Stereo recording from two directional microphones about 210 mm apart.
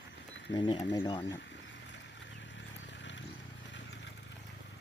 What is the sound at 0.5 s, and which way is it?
Speech, 20° left (ahead or behind).